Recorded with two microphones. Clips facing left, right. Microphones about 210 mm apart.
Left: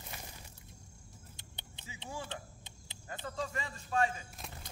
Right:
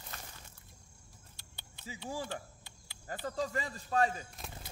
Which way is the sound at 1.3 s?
20° left (ahead or behind).